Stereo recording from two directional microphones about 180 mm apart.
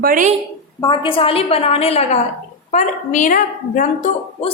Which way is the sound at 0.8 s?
25° left (ahead or behind).